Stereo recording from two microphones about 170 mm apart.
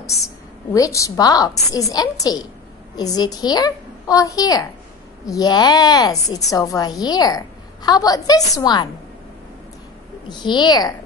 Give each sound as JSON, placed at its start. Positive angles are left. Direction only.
{"t": 0.7, "sound": "a woman's voice", "side_deg": 20}
{"t": 10.2, "sound": "a woman's voice", "side_deg": 25}